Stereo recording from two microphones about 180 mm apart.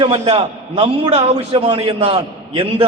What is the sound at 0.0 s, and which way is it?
A man's voice, 30° right (ahead or behind).